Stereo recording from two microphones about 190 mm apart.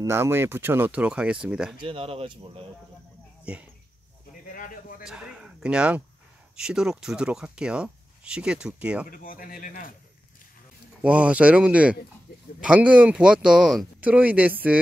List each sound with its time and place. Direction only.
0.0 s speech: 15° right (ahead or behind)
1.8 s speech: 30° right (ahead or behind)
3.5 s speech: 5° right (ahead or behind)
4.5 s a sound: 45° left (ahead or behind)
5.0 s speech: 5° right (ahead or behind)
9.1 s speech: 45° left (ahead or behind)
11.0 s speech: 5° right (ahead or behind)